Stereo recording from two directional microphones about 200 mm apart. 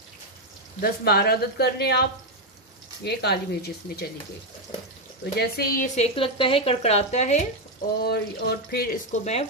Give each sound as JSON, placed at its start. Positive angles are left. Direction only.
{"t": 0.7, "sound": "speech", "side_deg": 50}
{"t": 5.4, "sound": "speech", "side_deg": 50}
{"t": 5.9, "sound": "speech", "side_deg": 30}
{"t": 8.0, "sound": "speech", "side_deg": 50}